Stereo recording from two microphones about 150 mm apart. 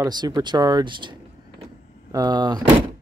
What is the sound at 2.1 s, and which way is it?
Speech, 30° right (ahead or behind).